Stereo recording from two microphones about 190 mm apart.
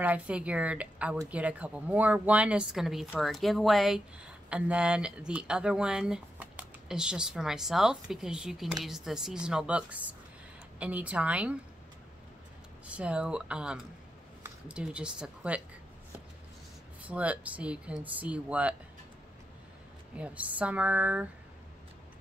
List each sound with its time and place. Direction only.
0.0 s speech: 5° right (ahead or behind)
12.8 s speech: 5° right (ahead or behind)
17.0 s speech: 5° right (ahead or behind)
20.2 s speech: 5° right (ahead or behind)